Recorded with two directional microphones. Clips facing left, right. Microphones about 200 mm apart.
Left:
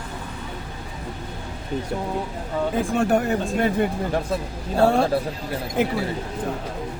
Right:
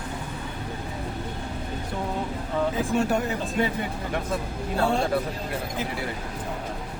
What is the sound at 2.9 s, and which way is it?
Speech, 55° left (ahead or behind).